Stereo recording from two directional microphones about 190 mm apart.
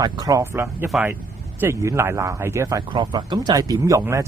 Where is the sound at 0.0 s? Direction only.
20° right (ahead or behind).